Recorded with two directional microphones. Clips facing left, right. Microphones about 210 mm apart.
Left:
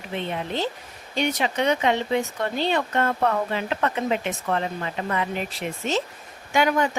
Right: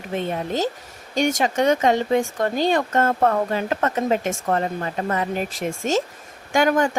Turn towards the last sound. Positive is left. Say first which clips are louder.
# right 3 dB
turn(degrees=-45)  # may be behind; listen again after turning